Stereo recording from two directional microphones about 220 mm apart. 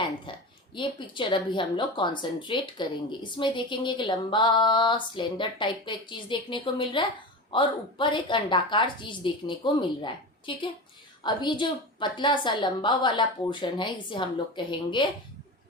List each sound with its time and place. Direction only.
0.8 s a woman's voice: 20° left (ahead or behind)